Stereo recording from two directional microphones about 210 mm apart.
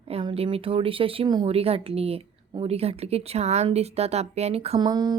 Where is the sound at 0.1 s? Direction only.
25° right (ahead or behind).